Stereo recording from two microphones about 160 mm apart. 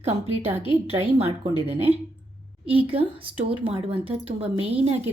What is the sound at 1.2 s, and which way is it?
A woman's voice, 40° right (ahead or behind).